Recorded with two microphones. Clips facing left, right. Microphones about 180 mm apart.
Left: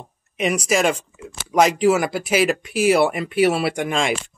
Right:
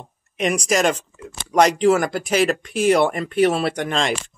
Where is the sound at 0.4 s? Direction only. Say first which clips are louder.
Even; 5° left (ahead or behind).